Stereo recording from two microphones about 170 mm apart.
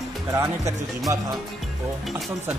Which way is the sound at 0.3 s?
20° right (ahead or behind).